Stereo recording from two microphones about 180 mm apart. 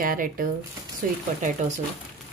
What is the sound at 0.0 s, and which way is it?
A woman's voice, 50° right (ahead or behind).